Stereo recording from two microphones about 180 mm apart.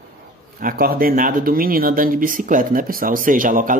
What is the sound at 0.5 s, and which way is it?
Speech, 55° right (ahead or behind).